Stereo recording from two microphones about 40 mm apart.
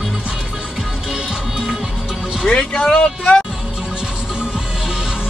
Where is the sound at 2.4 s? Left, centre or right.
Centre.